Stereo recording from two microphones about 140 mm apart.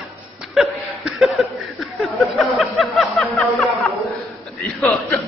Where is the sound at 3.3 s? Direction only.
10° left (ahead or behind).